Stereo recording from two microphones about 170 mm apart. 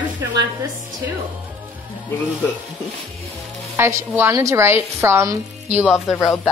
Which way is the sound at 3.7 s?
15° right (ahead or behind).